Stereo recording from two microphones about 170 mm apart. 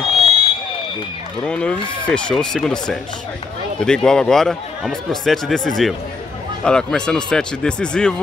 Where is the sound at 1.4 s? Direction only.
5° left (ahead or behind).